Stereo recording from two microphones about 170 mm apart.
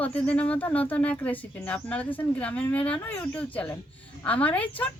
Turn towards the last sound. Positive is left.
turn(degrees=10)  # may be behind; listen again after turning